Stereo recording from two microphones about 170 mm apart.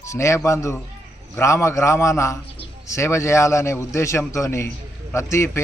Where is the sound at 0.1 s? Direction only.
15° left (ahead or behind).